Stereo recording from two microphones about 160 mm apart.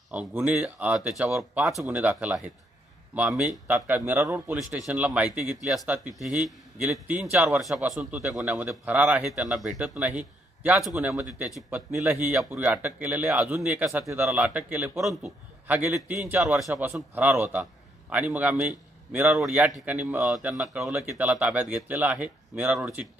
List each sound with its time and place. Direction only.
0.1 s a man's voice: 10° right (ahead or behind)
4.6 s a man's voice: centre (ahead or behind)
11.9 s a man's voice: 15° right (ahead or behind)
13.8 s a man's voice: 15° right (ahead or behind)
17.1 s a man's voice: 10° right (ahead or behind)